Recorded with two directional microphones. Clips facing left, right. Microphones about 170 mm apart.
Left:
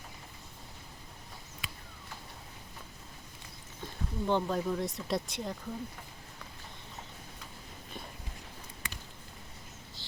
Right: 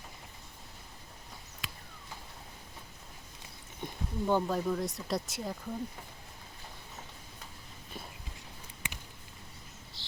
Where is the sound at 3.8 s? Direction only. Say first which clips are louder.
Right 1 dB; 10° right (ahead or behind).